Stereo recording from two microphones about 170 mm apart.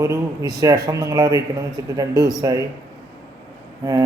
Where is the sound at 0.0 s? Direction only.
15° right (ahead or behind).